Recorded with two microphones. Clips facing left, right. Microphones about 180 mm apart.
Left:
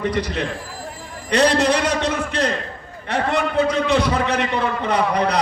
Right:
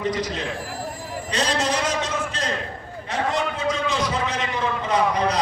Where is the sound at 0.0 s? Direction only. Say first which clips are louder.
Left 3 dB; 60° left (ahead or behind).